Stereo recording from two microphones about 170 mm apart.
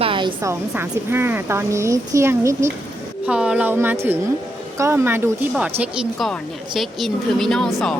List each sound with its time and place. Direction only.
0.0 s a sound: 30° right (ahead or behind)
0.4 s speech: 15° right (ahead or behind)
3.2 s a woman's voice: 5° right (ahead or behind)